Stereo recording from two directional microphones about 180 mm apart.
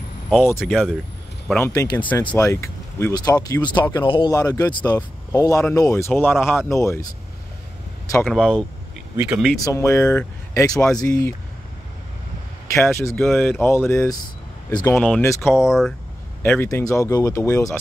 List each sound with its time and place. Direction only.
0.3 s speech: 10° left (ahead or behind)
0.6 s speech: centre (ahead or behind)
1.5 s speech: 15° left (ahead or behind)
4.1 s speech: 25° left (ahead or behind)
8.3 s speech: 5° left (ahead or behind)
9.1 s speech: 10° right (ahead or behind)
9.6 s speech: 15° left (ahead or behind)
12.9 s speech: 10° left (ahead or behind)
15.0 s speech: 5° left (ahead or behind)
15.5 s speech: centre (ahead or behind)
16.4 s speech: 10° left (ahead or behind)